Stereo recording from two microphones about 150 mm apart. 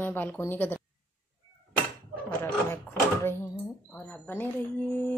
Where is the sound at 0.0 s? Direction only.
10° left (ahead or behind).